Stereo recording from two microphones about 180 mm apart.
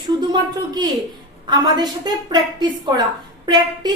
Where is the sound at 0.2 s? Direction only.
25° right (ahead or behind).